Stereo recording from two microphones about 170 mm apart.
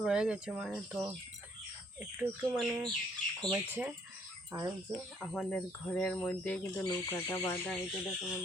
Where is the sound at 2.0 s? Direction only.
10° right (ahead or behind).